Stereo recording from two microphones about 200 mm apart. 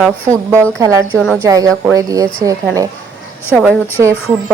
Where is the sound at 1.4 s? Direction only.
15° right (ahead or behind).